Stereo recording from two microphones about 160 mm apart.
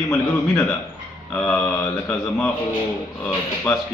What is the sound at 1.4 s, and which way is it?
Mantra, 15° left (ahead or behind).